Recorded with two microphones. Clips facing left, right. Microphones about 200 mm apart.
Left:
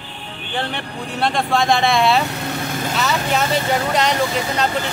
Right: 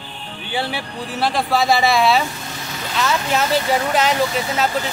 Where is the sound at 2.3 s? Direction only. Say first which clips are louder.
Left 7 dB; 65° left (ahead or behind).